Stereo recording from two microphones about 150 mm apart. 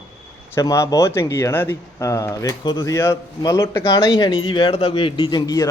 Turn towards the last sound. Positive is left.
turn(degrees=30)  # may be behind; listen again after turning